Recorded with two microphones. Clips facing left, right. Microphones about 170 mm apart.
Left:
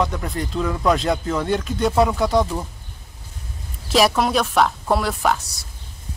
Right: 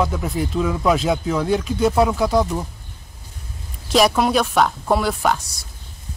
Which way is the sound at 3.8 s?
Centre (ahead or behind).